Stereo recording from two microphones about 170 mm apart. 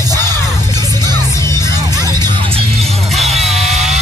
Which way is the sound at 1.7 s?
20° right (ahead or behind).